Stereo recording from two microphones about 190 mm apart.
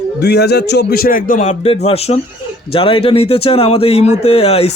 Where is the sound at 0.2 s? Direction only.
60° left (ahead or behind).